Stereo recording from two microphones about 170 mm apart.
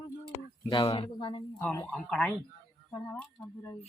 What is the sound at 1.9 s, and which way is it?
Speech, 5° left (ahead or behind).